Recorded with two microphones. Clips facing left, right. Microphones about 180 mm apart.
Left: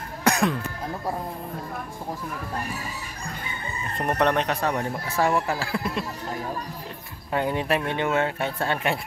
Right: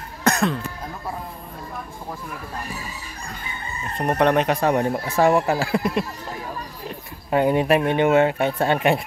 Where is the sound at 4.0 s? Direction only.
5° right (ahead or behind).